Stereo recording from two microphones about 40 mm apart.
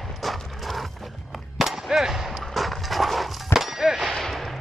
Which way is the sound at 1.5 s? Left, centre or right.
Centre.